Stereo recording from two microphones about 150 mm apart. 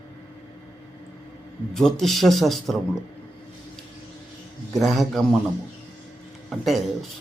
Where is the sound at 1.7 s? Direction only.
Centre (ahead or behind).